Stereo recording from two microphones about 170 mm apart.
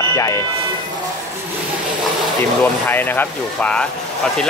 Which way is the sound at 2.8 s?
10° left (ahead or behind).